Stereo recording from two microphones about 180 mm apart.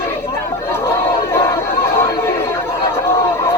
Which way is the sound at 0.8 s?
15° left (ahead or behind).